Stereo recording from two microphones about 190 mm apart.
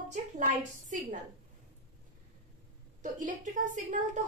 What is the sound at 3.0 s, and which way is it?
A woman's voice, 45° right (ahead or behind).